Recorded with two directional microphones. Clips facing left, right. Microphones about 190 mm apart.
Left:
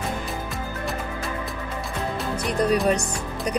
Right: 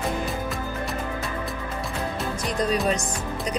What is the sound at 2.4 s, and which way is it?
Music, 60° left (ahead or behind).